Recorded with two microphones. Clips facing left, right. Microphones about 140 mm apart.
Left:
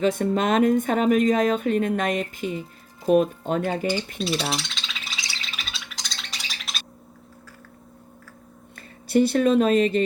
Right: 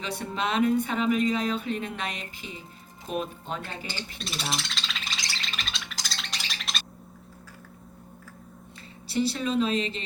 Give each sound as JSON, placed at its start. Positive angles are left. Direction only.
{"t": 0.0, "sound": "speech", "side_deg": 45}
{"t": 4.5, "sound": "a sound", "side_deg": 0}
{"t": 8.7, "sound": "speech", "side_deg": 55}